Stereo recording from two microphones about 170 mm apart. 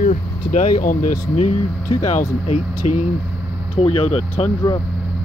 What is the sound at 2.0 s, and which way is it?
Speech, 40° left (ahead or behind).